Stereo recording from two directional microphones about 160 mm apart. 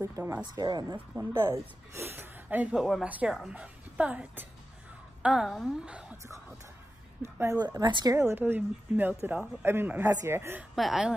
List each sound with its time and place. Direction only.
0.0 s speech: 15° right (ahead or behind)
0.6 s speech: 25° right (ahead or behind)
0.9 s a woman's voice: 15° right (ahead or behind)
7.2 s a woman's voice: 15° right (ahead or behind)
10.8 s a woman's voice: centre (ahead or behind)